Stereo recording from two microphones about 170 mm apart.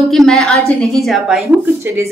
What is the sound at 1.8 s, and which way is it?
Speech, 15° right (ahead or behind).